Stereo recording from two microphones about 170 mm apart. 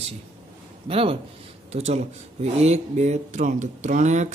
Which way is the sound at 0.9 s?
35° right (ahead or behind).